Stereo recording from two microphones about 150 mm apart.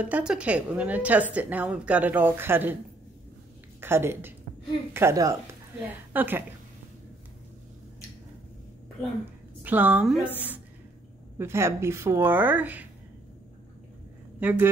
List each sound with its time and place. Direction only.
0.0 s a woman's voice: 5° right (ahead or behind)
3.8 s a woman's voice: 15° right (ahead or behind)
9.6 s a woman's voice: 10° right (ahead or behind)
11.3 s a woman's voice: 15° right (ahead or behind)
14.4 s a woman's voice: 15° right (ahead or behind)